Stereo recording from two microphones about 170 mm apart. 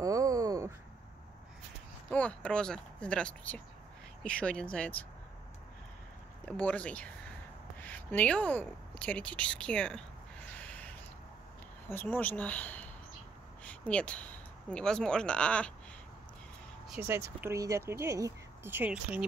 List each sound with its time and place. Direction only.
0.0 s a sound: 20° right (ahead or behind)
2.0 s speech: 5° left (ahead or behind)
6.4 s speech: 10° left (ahead or behind)
10.5 s a sound: 10° left (ahead or behind)
11.9 s speech: 10° left (ahead or behind)
17.0 s speech: 15° right (ahead or behind)